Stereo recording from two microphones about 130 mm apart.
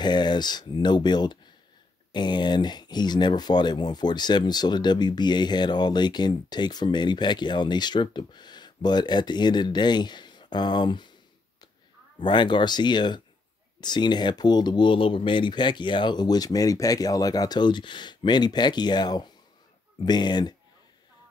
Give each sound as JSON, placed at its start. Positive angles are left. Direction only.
{"t": 0.0, "sound": "speech", "side_deg": 35}
{"t": 12.2, "sound": "speech", "side_deg": 35}